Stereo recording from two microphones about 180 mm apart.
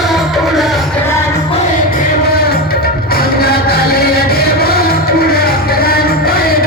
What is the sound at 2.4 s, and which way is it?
Music, 60° left (ahead or behind).